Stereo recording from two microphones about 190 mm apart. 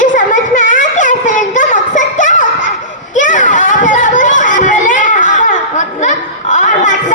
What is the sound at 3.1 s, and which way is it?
Children playing, 45° left (ahead or behind).